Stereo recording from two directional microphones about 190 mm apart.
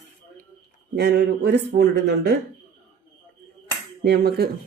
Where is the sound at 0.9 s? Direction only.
60° right (ahead or behind).